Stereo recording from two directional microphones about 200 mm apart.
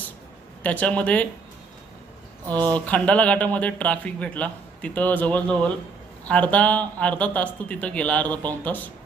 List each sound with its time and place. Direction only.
0.6 s speech: 5° left (ahead or behind)
2.5 s speech: 5° left (ahead or behind)